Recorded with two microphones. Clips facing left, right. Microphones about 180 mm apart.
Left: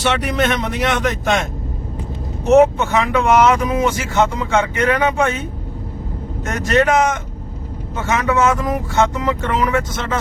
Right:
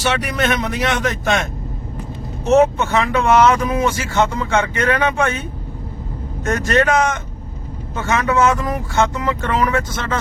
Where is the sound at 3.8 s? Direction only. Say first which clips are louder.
Left 1 dB; centre (ahead or behind).